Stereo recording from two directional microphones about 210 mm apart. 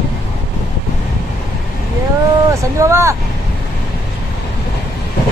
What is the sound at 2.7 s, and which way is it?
Speech, 15° right (ahead or behind).